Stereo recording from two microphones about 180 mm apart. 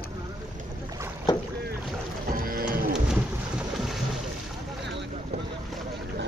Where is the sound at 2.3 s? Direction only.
55° right (ahead or behind).